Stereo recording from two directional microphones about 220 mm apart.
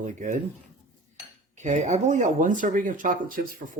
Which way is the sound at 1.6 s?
35° right (ahead or behind).